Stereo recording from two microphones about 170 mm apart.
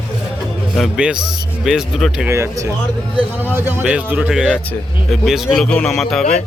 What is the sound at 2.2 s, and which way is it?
A man's voice, 15° right (ahead or behind).